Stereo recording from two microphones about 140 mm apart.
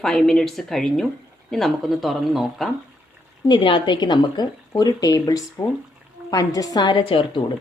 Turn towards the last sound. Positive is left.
turn(degrees=35)  # may be behind; listen again after turning